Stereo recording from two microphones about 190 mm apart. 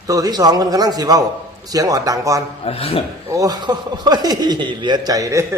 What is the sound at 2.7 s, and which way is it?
Speech, 30° left (ahead or behind).